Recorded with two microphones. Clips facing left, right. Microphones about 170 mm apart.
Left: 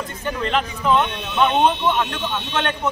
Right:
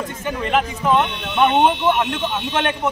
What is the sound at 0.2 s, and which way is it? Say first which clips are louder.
Speech: right 2 dB; 10° right (ahead or behind).